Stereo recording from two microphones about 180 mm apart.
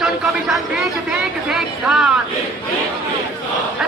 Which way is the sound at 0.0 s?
Centre (ahead or behind).